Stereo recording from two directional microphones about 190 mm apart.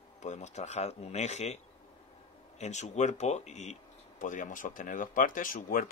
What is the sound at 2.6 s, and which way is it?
Speech, 35° left (ahead or behind).